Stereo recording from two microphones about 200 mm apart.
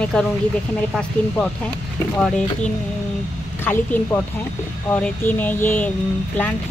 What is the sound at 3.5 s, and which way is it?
A woman's voice, 10° left (ahead or behind).